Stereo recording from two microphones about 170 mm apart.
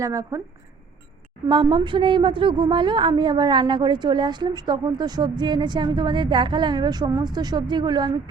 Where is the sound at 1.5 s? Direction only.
30° right (ahead or behind).